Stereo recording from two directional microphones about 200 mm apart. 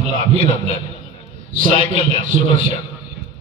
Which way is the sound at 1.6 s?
25° left (ahead or behind).